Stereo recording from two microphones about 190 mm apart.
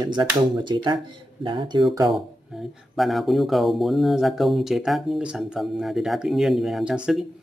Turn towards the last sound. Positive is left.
turn(degrees=-5)  # may be behind; listen again after turning